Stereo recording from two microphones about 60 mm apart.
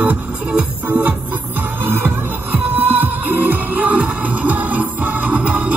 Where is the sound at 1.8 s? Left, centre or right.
Right.